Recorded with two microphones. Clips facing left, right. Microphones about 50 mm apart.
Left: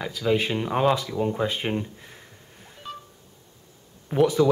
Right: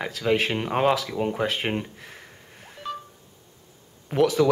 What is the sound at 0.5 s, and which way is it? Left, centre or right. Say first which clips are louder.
Speech: even; right.